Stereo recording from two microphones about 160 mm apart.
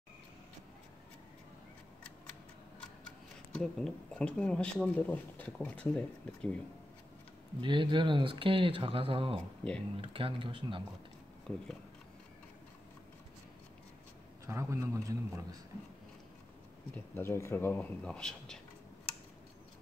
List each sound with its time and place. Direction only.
3.5 s speech: 5° left (ahead or behind)
7.6 s speech: 30° right (ahead or behind)
11.5 s speech: 10° left (ahead or behind)
14.4 s a man's voice: 15° right (ahead or behind)
16.9 s speech: 15° left (ahead or behind)